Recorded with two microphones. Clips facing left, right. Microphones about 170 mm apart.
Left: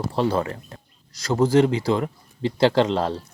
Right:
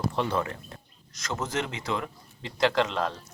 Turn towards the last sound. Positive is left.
turn(degrees=30)  # may be behind; listen again after turning